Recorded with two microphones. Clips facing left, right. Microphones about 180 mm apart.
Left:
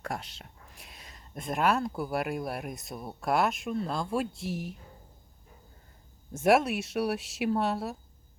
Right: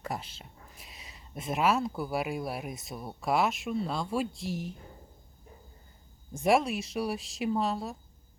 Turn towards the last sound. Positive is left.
turn(degrees=5)  # may be behind; listen again after turning